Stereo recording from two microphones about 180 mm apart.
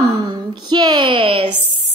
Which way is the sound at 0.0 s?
25° right (ahead or behind).